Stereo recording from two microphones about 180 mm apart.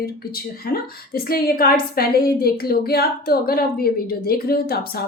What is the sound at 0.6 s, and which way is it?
A woman's voice, 55° left (ahead or behind).